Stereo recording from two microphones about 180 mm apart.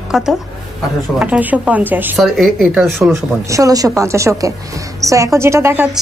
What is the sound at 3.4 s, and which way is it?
A woman's voice, 20° right (ahead or behind).